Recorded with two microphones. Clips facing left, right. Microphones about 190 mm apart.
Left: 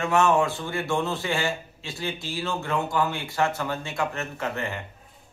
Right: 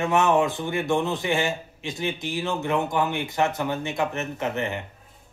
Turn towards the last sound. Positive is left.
turn(degrees=-20)  # may be behind; listen again after turning